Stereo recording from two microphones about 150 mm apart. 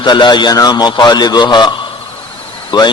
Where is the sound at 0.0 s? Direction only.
30° left (ahead or behind).